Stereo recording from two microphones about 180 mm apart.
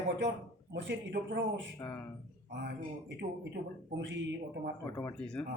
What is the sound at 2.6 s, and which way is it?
A man's voice, 65° right (ahead or behind).